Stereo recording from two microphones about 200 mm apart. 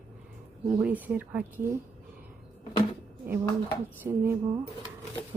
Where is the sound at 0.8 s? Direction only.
5° right (ahead or behind).